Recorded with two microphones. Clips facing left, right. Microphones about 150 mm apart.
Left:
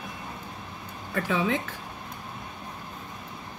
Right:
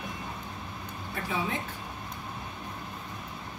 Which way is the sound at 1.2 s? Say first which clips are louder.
Left 6 dB; 90° left.